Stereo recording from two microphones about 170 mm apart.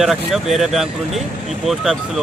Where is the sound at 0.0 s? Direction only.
Centre (ahead or behind).